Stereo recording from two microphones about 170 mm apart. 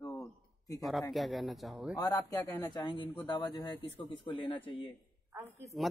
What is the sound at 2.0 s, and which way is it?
Speech, 20° left (ahead or behind).